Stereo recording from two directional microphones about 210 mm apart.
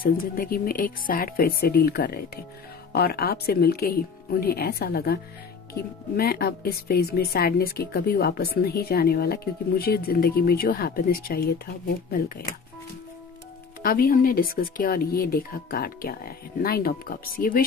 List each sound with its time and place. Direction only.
0.0 s a woman's voice: 45° left (ahead or behind)
13.8 s a woman's voice: 45° left (ahead or behind)